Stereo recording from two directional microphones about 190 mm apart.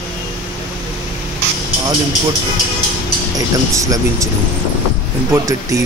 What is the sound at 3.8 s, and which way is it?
Speech, 15° right (ahead or behind).